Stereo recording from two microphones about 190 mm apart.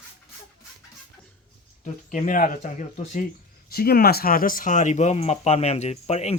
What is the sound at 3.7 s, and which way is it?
Speech, 55° left (ahead or behind).